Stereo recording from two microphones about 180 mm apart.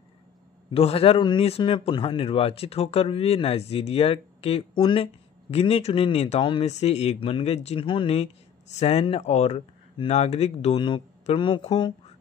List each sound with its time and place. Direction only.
0.7 s a man's voice: 30° left (ahead or behind)